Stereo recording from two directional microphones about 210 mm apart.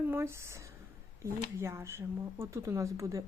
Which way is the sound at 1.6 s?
10° right (ahead or behind).